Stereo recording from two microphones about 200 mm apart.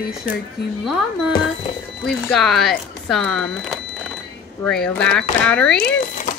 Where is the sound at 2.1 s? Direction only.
Centre (ahead or behind).